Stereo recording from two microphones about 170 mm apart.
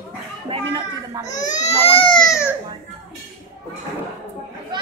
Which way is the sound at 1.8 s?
30° left (ahead or behind).